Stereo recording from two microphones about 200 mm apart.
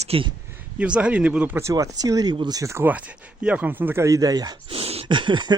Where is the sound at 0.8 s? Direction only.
5° right (ahead or behind).